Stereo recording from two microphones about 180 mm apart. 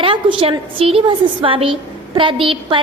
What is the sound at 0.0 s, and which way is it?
A woman's voice, 30° right (ahead or behind).